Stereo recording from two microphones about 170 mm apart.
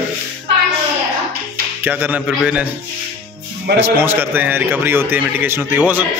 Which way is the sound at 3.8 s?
10° right (ahead or behind).